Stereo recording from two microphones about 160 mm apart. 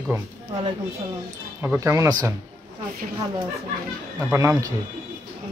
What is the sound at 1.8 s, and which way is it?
Speech, 20° right (ahead or behind).